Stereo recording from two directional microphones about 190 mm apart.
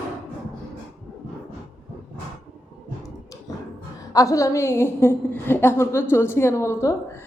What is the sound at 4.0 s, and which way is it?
A woman's voice, 15° left (ahead or behind).